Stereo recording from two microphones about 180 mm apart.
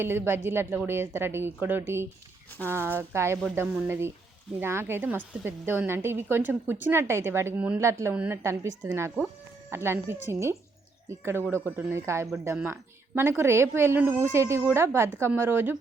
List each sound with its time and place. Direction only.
0.0 s a woman's voice: 15° right (ahead or behind)